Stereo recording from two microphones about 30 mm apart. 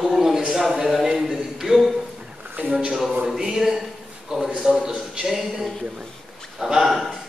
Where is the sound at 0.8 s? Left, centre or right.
Centre.